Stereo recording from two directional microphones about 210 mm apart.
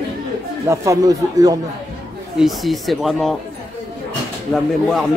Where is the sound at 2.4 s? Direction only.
Centre (ahead or behind).